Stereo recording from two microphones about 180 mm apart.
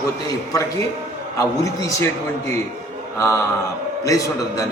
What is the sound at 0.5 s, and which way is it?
A man's voice, 20° left (ahead or behind).